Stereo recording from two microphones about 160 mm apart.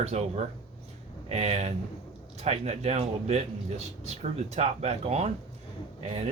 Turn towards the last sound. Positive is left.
turn(degrees=-40)  # may be behind; listen again after turning